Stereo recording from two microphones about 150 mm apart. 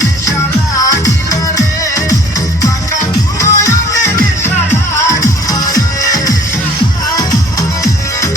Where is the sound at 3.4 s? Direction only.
20° left (ahead or behind).